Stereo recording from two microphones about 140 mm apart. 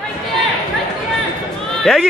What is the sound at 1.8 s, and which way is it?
Speech, centre (ahead or behind).